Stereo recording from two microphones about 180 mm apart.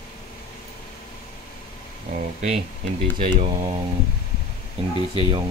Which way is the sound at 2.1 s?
40° right (ahead or behind).